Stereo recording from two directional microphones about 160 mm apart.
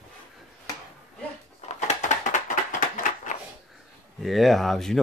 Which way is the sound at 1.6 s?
45° left (ahead or behind).